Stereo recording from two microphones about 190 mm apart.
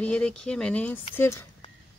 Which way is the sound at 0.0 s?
5° left (ahead or behind).